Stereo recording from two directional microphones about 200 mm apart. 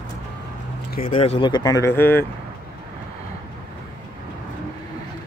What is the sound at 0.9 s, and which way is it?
Speech, 40° left (ahead or behind).